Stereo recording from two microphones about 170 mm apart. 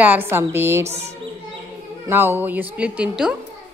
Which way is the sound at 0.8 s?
40° right (ahead or behind).